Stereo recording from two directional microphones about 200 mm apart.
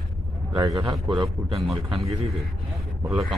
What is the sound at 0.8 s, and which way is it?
Speech, 20° right (ahead or behind).